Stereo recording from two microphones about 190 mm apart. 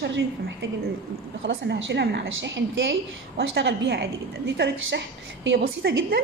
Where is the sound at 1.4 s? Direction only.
75° right (ahead or behind).